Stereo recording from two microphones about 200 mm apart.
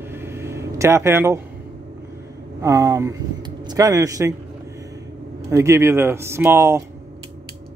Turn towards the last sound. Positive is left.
turn(degrees=-10)  # may be behind; listen again after turning